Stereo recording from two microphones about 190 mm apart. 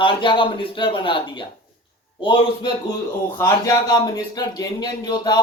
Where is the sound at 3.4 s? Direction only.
20° left (ahead or behind).